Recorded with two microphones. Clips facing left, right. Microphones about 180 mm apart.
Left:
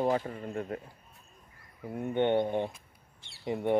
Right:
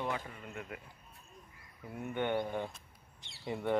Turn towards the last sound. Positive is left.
turn(degrees=20)  # may be behind; listen again after turning